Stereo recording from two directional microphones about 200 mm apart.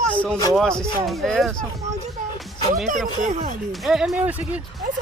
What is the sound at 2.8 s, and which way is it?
Speech, 40° right (ahead or behind).